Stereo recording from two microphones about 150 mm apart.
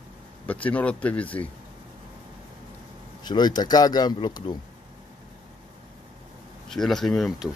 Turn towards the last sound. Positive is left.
turn(degrees=0)  # may be behind; listen again after turning